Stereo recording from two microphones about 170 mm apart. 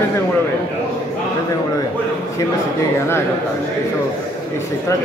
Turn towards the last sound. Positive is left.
turn(degrees=15)  # may be behind; listen again after turning